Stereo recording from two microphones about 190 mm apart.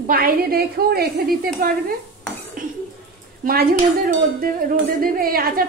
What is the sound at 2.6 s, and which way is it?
Dishes, 45° right (ahead or behind).